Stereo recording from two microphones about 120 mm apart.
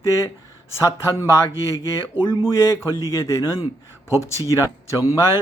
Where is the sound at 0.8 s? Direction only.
25° left (ahead or behind).